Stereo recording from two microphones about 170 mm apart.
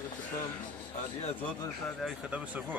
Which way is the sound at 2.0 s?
5° right (ahead or behind).